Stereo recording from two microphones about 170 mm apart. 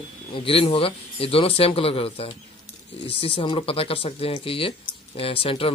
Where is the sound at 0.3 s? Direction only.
35° left (ahead or behind).